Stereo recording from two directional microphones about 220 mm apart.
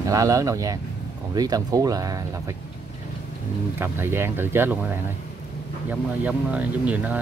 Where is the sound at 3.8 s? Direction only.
10° right (ahead or behind).